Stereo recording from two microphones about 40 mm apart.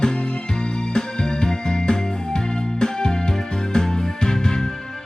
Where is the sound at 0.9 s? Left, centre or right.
Centre.